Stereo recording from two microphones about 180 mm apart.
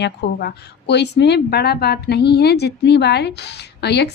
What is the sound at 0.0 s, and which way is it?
Speech, 65° left (ahead or behind).